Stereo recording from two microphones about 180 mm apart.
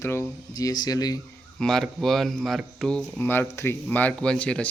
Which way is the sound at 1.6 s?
Centre (ahead or behind).